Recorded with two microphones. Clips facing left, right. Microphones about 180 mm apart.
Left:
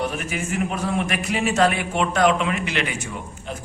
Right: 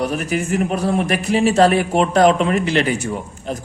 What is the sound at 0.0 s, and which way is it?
A man's voice, 40° right (ahead or behind).